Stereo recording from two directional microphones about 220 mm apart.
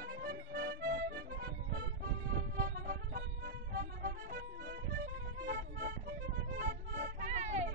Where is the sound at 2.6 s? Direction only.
40° right (ahead or behind).